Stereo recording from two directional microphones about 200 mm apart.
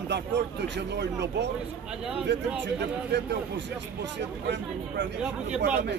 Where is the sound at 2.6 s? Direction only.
60° right (ahead or behind).